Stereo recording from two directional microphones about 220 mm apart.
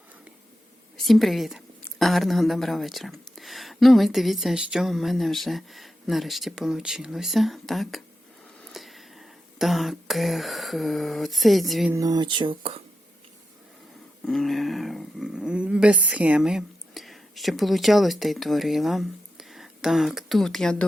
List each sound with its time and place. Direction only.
1.0 s a woman's voice: centre (ahead or behind)
11.9 s speech: 15° right (ahead or behind)
14.3 s speech: centre (ahead or behind)